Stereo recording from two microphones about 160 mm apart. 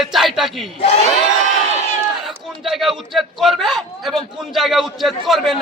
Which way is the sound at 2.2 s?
Centre (ahead or behind).